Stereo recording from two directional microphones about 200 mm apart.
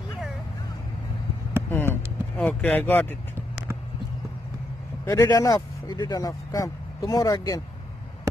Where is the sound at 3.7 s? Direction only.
15° right (ahead or behind).